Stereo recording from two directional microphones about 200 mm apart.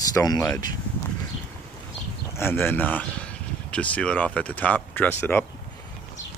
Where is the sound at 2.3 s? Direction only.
10° left (ahead or behind).